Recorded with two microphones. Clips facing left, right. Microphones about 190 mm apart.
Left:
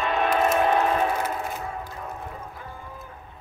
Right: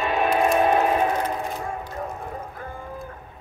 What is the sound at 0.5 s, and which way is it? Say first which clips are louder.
Train: right 2 dB; 15° right (ahead or behind).